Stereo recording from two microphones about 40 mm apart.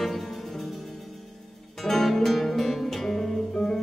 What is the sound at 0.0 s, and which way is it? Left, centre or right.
Music, centre.